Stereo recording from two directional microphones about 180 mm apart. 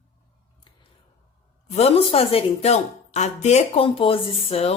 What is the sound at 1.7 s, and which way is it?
A woman's voice, 35° left (ahead or behind).